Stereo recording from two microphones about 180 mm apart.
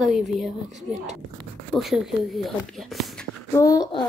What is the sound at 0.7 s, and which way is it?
Speech, 40° right (ahead or behind).